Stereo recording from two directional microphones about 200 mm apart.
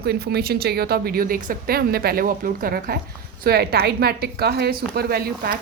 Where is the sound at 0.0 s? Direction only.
55° right (ahead or behind).